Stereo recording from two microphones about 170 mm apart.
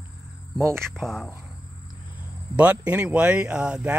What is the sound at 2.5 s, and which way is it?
Speech, 10° right (ahead or behind).